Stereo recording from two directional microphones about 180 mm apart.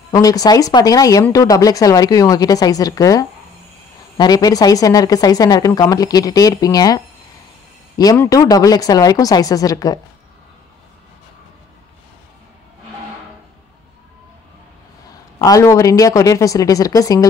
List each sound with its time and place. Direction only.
0.1 s speech: 20° left (ahead or behind)
8.0 s speech: 20° left (ahead or behind)
15.3 s speech: 20° left (ahead or behind)